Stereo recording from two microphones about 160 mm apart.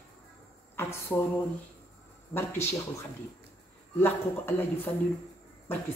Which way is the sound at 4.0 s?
15° left (ahead or behind).